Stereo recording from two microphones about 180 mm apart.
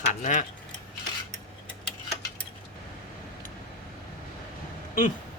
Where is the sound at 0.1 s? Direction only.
45° left (ahead or behind).